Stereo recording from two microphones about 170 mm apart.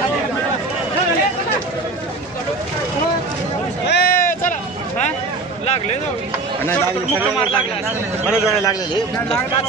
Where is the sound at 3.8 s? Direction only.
70° left (ahead or behind).